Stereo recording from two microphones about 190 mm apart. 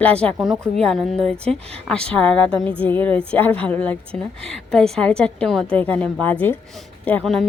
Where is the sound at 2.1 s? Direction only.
5° left (ahead or behind).